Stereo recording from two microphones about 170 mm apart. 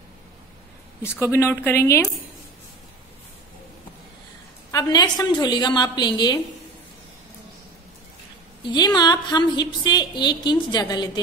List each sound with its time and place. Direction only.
1.2 s speech: 15° left (ahead or behind)
4.6 s a woman's voice: 20° left (ahead or behind)
8.6 s a woman's voice: 25° left (ahead or behind)